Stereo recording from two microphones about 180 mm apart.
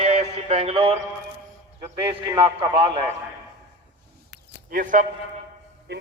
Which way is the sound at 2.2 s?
25° right (ahead or behind).